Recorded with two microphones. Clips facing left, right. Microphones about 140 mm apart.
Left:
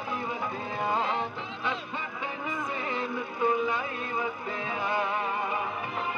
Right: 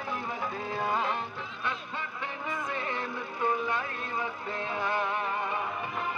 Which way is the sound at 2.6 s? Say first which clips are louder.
Left 2 dB; 10° left (ahead or behind).